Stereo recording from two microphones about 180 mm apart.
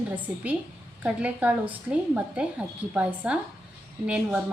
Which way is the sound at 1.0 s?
10° right (ahead or behind).